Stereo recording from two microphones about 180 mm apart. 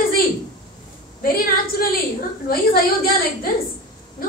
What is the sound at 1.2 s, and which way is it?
A woman's voice, 55° left (ahead or behind).